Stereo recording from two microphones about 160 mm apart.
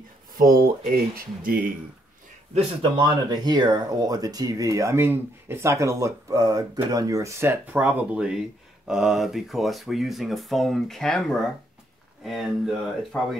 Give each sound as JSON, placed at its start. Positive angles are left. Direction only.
{"t": 0.7, "sound": "speech", "side_deg": -65}
{"t": 2.5, "sound": "speech", "side_deg": -30}